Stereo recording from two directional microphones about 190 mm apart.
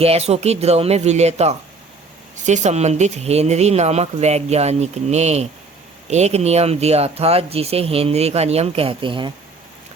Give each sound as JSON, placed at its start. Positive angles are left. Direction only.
{"t": 0.0, "sound": "speech", "side_deg": -30}